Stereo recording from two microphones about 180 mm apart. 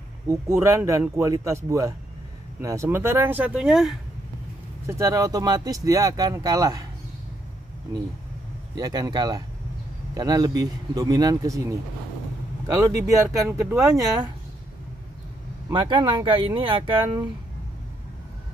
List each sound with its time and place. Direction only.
0.3 s speech: 15° right (ahead or behind)
4.8 s speech: 20° right (ahead or behind)
8.7 s speech: 20° right (ahead or behind)
15.7 s speech: 25° right (ahead or behind)